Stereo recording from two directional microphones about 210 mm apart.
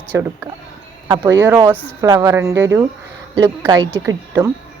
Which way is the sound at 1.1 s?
15° right (ahead or behind).